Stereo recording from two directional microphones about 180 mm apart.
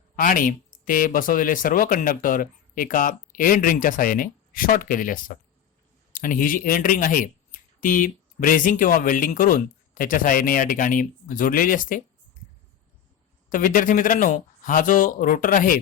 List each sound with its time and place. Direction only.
0.2 s speech: 50° left (ahead or behind)
13.5 s speech: 50° left (ahead or behind)